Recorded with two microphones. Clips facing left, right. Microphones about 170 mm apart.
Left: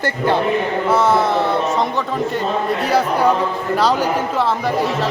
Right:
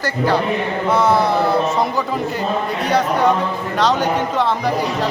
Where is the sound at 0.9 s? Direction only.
Centre (ahead or behind).